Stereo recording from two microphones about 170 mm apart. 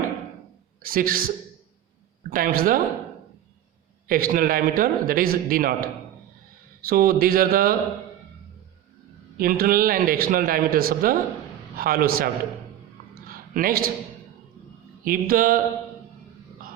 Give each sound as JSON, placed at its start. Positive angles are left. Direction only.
{"t": 0.8, "sound": "a man's voice", "side_deg": -60}
{"t": 2.3, "sound": "a man's voice", "side_deg": -55}
{"t": 4.1, "sound": "a man's voice", "side_deg": -55}
{"t": 9.4, "sound": "a man's voice", "side_deg": -60}
{"t": 13.1, "sound": "a sound", "side_deg": -60}
{"t": 15.0, "sound": "a man's voice", "side_deg": -55}